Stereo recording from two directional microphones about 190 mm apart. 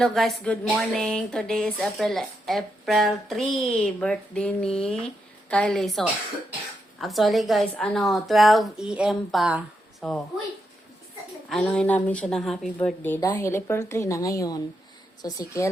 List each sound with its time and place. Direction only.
0.0 s speech: centre (ahead or behind)
11.4 s speech: 5° left (ahead or behind)